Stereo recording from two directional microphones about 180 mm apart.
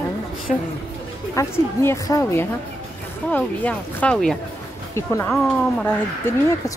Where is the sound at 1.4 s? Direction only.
15° left (ahead or behind).